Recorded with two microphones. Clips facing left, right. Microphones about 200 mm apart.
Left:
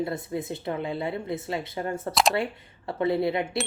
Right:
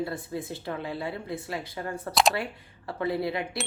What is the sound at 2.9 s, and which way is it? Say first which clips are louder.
Speech: left 4 dB; 25° left (ahead or behind).